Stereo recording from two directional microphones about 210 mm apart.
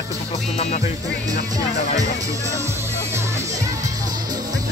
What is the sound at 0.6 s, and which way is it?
Music, 35° left (ahead or behind).